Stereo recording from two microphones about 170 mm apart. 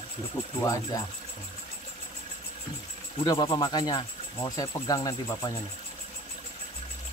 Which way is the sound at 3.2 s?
25° left (ahead or behind).